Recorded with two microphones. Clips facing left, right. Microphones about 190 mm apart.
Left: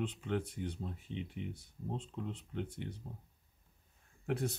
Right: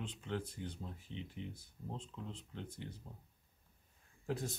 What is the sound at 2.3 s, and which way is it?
Speech, 65° left (ahead or behind).